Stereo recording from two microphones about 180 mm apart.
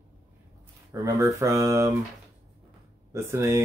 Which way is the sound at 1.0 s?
15° right (ahead or behind).